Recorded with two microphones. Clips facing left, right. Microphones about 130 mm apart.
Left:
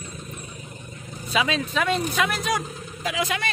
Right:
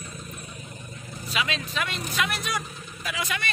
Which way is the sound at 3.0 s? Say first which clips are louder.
Left 5 dB; 90° left.